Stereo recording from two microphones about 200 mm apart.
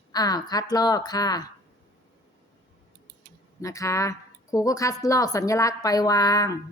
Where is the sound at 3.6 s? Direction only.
15° left (ahead or behind).